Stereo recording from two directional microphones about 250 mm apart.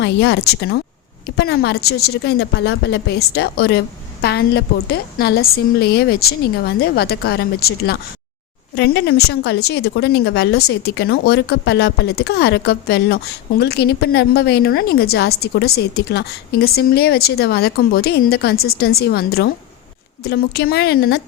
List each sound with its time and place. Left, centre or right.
0.0 s a woman's voice: left